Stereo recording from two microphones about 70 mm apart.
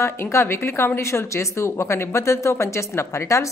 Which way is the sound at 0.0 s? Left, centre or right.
Left.